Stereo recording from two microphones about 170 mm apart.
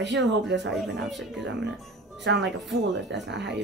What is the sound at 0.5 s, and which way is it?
Speech, 90° right.